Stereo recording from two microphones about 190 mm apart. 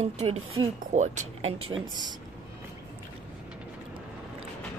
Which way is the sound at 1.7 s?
25° right (ahead or behind).